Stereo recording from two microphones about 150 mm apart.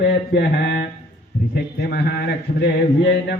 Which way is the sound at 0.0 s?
90° left.